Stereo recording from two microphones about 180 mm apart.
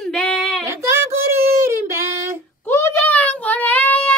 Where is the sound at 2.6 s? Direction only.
15° left (ahead or behind).